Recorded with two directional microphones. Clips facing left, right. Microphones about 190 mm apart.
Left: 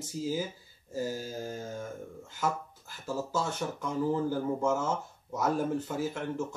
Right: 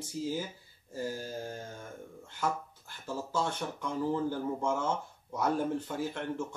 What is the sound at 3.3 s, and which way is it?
Speech, 5° left (ahead or behind).